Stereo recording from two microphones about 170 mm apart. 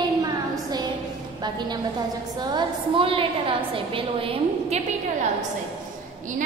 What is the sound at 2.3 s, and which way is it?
A woman's voice, 25° right (ahead or behind).